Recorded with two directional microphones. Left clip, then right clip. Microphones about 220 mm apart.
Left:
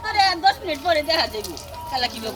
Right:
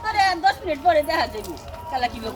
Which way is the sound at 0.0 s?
10° right (ahead or behind).